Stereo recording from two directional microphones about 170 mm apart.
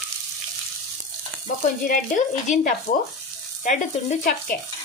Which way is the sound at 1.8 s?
50° left (ahead or behind).